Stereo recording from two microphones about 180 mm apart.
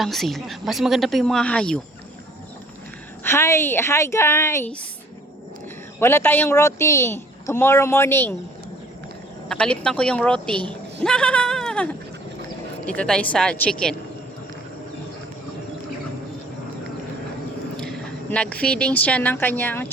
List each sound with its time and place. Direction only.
0.0 s speech: centre (ahead or behind)
3.2 s a woman's voice: 15° left (ahead or behind)
6.0 s a woman's voice: 15° left (ahead or behind)
9.5 s speech: 5° left (ahead or behind)
11.0 s a sound: 5° left (ahead or behind)
12.8 s speech: 5° left (ahead or behind)
17.7 s speech: 5° left (ahead or behind)